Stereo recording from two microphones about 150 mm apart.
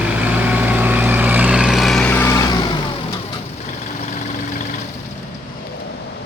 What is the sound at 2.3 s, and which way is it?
Vehicle, 25° left (ahead or behind).